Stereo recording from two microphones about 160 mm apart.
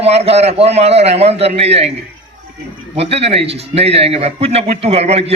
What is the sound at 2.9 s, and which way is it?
A man's voice, 40° right (ahead or behind).